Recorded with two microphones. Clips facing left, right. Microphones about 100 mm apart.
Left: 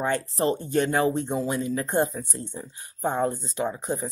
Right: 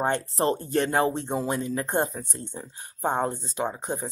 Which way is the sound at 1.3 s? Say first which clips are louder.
Left 1 dB; 45° right (ahead or behind).